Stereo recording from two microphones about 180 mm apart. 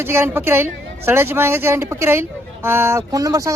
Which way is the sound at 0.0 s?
10° right (ahead or behind).